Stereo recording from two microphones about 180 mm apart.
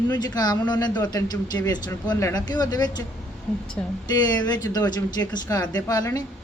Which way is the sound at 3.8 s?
5° left (ahead or behind).